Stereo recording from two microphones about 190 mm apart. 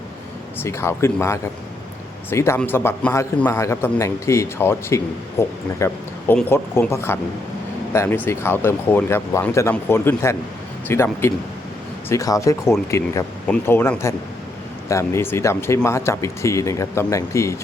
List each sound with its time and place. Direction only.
0.6 s a man's voice: 15° left (ahead or behind)